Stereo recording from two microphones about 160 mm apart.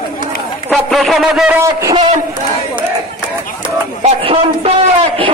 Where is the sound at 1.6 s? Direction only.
20° right (ahead or behind).